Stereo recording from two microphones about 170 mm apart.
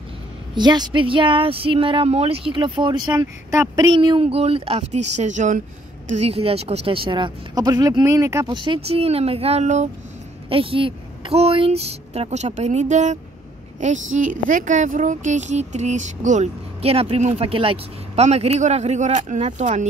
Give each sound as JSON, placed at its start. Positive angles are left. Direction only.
{"t": 0.6, "sound": "a woman's voice", "side_deg": -25}
{"t": 8.5, "sound": "a woman's voice", "side_deg": -30}
{"t": 10.5, "sound": "a woman's voice", "side_deg": -30}